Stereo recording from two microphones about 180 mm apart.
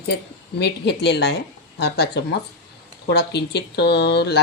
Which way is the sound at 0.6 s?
70° left (ahead or behind).